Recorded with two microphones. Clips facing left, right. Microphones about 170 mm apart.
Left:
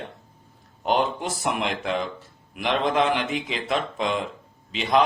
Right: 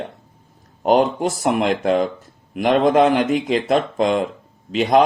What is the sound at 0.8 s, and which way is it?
Speech, 45° right (ahead or behind).